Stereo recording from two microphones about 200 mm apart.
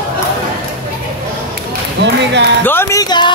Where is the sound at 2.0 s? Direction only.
55° right (ahead or behind).